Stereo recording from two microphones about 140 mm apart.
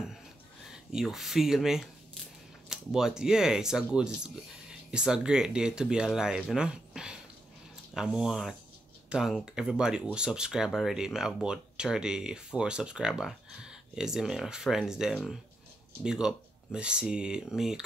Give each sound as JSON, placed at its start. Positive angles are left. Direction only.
{"t": 0.7, "sound": "speech", "side_deg": 0}
{"t": 6.5, "sound": "a sound", "side_deg": -5}
{"t": 7.9, "sound": "speech", "side_deg": -5}